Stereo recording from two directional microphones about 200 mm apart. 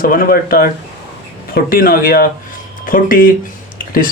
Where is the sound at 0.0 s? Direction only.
45° left (ahead or behind).